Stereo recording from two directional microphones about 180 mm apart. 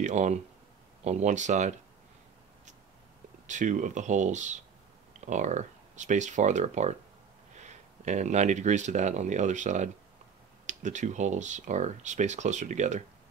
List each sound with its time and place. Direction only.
0.0 s speech: 40° right (ahead or behind)
3.4 s speech: 45° right (ahead or behind)